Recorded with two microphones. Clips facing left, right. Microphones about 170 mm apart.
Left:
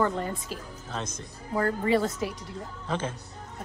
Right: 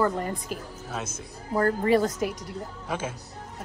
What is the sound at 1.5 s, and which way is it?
Speech, 40° right (ahead or behind).